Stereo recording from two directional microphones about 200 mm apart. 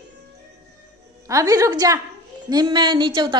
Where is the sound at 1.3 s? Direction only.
15° right (ahead or behind).